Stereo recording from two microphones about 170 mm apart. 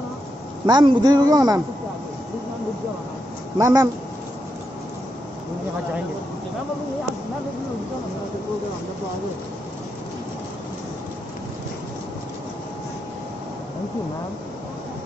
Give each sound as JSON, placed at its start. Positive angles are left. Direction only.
{"t": 0.7, "sound": "speech", "side_deg": -25}
{"t": 3.5, "sound": "speech", "side_deg": -20}